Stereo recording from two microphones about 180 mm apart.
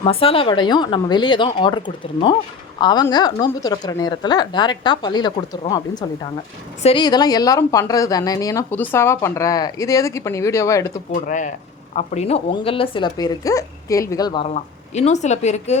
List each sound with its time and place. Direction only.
0.0 s speech: 30° left (ahead or behind)
2.8 s a woman's voice: 25° left (ahead or behind)
11.1 s speech: 45° left (ahead or behind); by 14.4 s 20° left (ahead or behind)
14.5 s speech: 40° left (ahead or behind)